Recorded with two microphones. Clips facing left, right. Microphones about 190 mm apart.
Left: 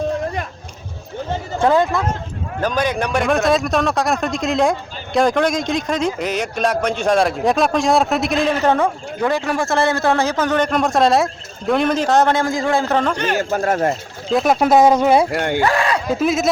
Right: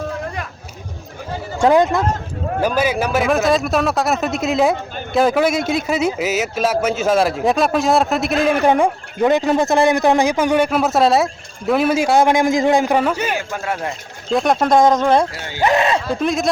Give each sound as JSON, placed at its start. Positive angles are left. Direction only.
{"t": 1.5, "sound": "speech", "side_deg": -15}
{"t": 2.6, "sound": "speech", "side_deg": -10}
{"t": 8.6, "sound": "speech", "side_deg": -15}
{"t": 13.3, "sound": "speech", "side_deg": 40}
{"t": 14.3, "sound": "speech", "side_deg": 0}
{"t": 15.3, "sound": "speech", "side_deg": 60}
{"t": 15.6, "sound": "speech", "side_deg": -20}
{"t": 16.1, "sound": "speech", "side_deg": 5}